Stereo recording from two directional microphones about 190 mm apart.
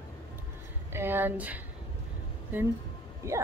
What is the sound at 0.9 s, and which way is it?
Speech, 10° right (ahead or behind).